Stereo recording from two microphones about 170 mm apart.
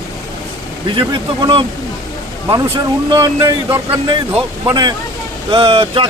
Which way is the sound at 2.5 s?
30° right (ahead or behind).